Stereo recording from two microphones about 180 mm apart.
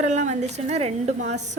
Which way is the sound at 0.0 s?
40° right (ahead or behind).